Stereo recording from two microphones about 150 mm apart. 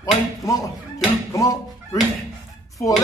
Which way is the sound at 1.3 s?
20° left (ahead or behind).